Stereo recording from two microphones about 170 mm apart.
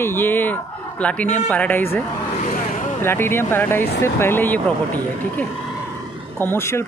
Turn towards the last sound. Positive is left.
turn(degrees=15)  # may be behind; listen again after turning